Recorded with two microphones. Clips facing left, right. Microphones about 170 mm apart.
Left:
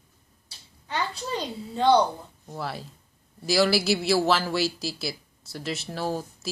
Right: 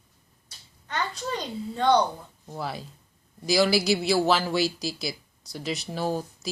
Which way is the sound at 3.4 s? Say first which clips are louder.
Even; 5° left (ahead or behind).